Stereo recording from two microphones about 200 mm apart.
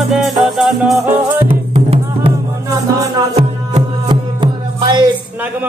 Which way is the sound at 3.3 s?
30° right (ahead or behind).